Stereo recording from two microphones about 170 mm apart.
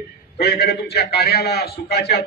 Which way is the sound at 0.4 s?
65° left (ahead or behind).